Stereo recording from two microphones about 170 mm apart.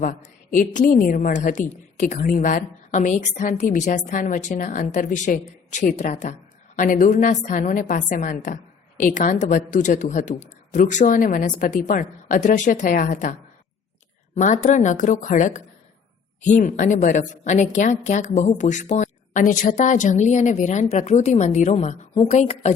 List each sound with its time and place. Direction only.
0.0 s a woman's voice: 50° left (ahead or behind)
14.3 s a woman's voice: 45° left (ahead or behind)